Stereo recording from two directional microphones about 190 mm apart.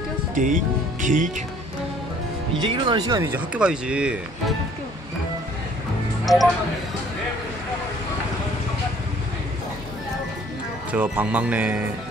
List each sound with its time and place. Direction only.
0.3 s speech: 40° right (ahead or behind)
2.6 s speech: 25° right (ahead or behind)
3.5 s speech: 5° right (ahead or behind)
6.2 s speech: centre (ahead or behind)
10.9 s speech: 10° right (ahead or behind)